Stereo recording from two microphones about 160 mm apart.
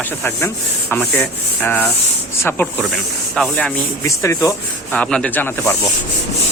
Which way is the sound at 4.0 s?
20° left (ahead or behind).